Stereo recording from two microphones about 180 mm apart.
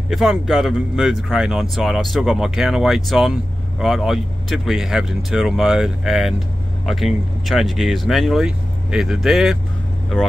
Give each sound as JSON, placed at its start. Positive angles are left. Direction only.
{"t": 0.1, "sound": "speech", "side_deg": 0}